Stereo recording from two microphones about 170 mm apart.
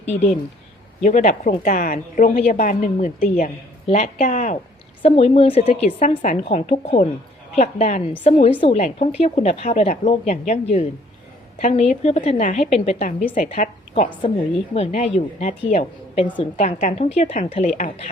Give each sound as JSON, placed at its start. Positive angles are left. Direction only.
{"t": 0.0, "sound": "a woman's voice", "side_deg": 40}
{"t": 3.8, "sound": "a woman's voice", "side_deg": 45}
{"t": 14.2, "sound": "a woman's voice", "side_deg": 35}
{"t": 17.7, "sound": "a woman's voice", "side_deg": 50}